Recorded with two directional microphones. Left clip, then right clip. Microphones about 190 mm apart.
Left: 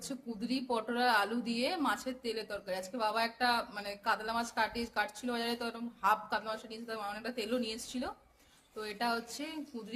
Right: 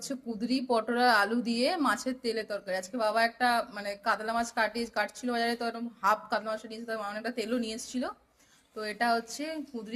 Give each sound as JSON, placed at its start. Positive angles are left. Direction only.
{"t": 0.0, "sound": "speech", "side_deg": -20}